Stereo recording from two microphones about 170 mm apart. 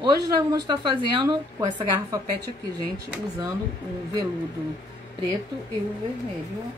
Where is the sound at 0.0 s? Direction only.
25° right (ahead or behind).